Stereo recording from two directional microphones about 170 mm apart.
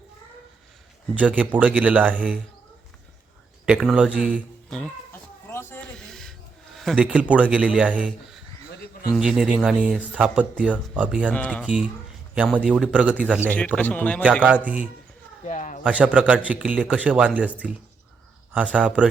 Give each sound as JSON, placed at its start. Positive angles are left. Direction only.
{"t": 1.1, "sound": "speech", "side_deg": -10}
{"t": 3.7, "sound": "speech", "side_deg": -5}
{"t": 5.5, "sound": "a sound", "side_deg": 15}
{"t": 6.7, "sound": "speech", "side_deg": -5}
{"t": 8.8, "sound": "a sound", "side_deg": 60}
{"t": 9.1, "sound": "speech", "side_deg": -5}
{"t": 11.3, "sound": "speech", "side_deg": 5}
{"t": 11.6, "sound": "a man's voice", "side_deg": -5}
{"t": 13.5, "sound": "speech", "side_deg": 10}
{"t": 14.4, "sound": "speech", "side_deg": -10}
{"t": 15.4, "sound": "a sound", "side_deg": 45}
{"t": 15.8, "sound": "speech", "side_deg": -10}
{"t": 18.5, "sound": "speech", "side_deg": -10}